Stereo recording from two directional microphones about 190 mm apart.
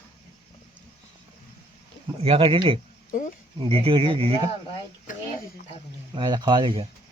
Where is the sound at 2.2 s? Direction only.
30° right (ahead or behind).